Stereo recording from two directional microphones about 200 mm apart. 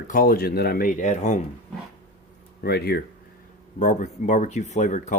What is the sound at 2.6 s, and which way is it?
Speech, 50° left (ahead or behind).